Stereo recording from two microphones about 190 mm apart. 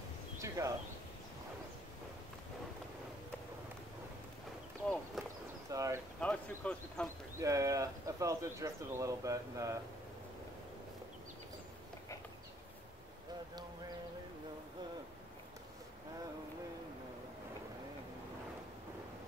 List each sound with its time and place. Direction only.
0.4 s speech: 15° right (ahead or behind)
5.2 s a sound: centre (ahead or behind)
5.7 s speech: 15° right (ahead or behind)
6.1 s speech: 5° left (ahead or behind)
7.3 s speech: 15° right (ahead or behind)